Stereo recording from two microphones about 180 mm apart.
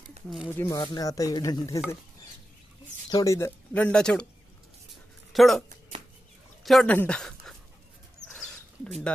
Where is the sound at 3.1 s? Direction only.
15° left (ahead or behind).